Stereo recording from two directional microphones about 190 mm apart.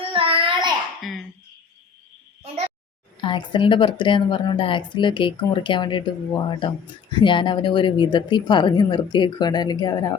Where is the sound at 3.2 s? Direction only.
25° left (ahead or behind).